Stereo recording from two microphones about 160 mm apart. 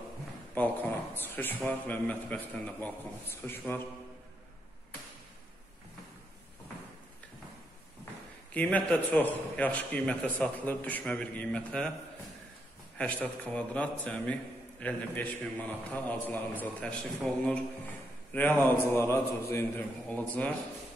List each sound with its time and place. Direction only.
0.6 s a man's voice: 10° left (ahead or behind)
8.5 s a man's voice: 10° left (ahead or behind)
12.9 s a man's voice: 5° left (ahead or behind)